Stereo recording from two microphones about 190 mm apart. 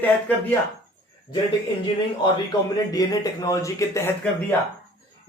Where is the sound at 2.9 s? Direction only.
20° left (ahead or behind).